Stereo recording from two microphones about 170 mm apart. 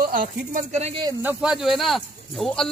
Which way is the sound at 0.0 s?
50° right (ahead or behind).